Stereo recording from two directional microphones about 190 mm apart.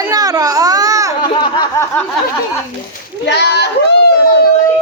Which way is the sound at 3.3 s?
60° left (ahead or behind).